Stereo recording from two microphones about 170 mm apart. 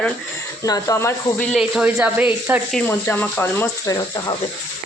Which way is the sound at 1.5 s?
5° right (ahead or behind).